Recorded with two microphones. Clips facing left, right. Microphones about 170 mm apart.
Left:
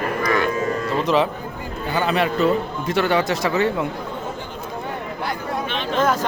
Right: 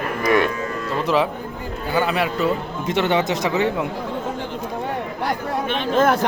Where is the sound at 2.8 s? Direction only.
20° right (ahead or behind).